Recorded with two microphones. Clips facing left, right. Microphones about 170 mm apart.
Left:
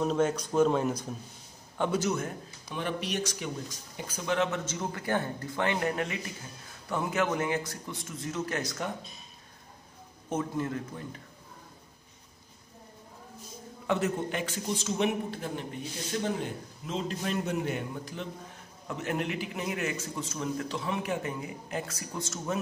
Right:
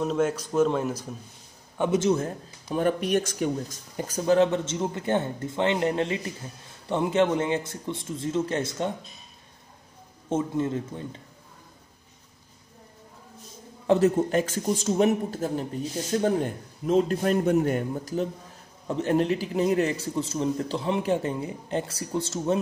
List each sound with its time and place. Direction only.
0.0 s speech: 5° right (ahead or behind)
1.8 s a man's voice: 25° right (ahead or behind)
10.3 s a man's voice: 25° right (ahead or behind)
13.8 s a man's voice: 35° right (ahead or behind)